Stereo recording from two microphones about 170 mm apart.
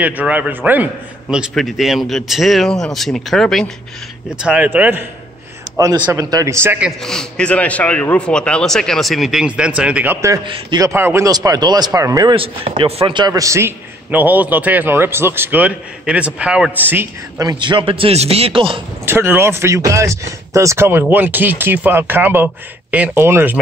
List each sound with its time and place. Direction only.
0.0 s a man's voice: 10° right (ahead or behind)
4.4 s a man's voice: 10° right (ahead or behind)
7.0 s a man's voice: 5° left (ahead or behind); by 10.4 s 15° right (ahead or behind)
10.4 s a man's voice: 30° right (ahead or behind)
19.0 s speech: 15° right (ahead or behind)